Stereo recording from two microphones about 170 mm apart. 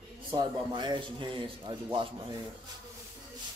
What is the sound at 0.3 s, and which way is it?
A man's voice, 25° right (ahead or behind).